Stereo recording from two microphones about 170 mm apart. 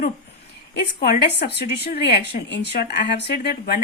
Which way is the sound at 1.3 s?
80° left.